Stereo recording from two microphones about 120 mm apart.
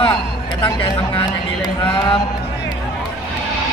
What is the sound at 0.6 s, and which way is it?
Speech, 35° left (ahead or behind).